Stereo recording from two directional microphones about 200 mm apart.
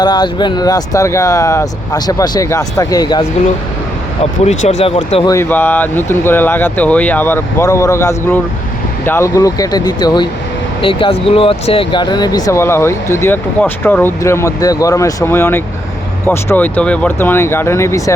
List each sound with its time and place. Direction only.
0.0 s speech: 20° left (ahead or behind)
4.4 s speech: 35° left (ahead or behind)
5.3 s speech: 10° left (ahead or behind)